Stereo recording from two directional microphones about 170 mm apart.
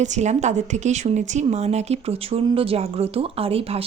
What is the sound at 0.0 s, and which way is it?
A woman's voice, 45° right (ahead or behind).